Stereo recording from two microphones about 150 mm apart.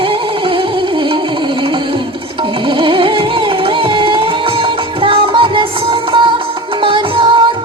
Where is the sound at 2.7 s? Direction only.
35° right (ahead or behind).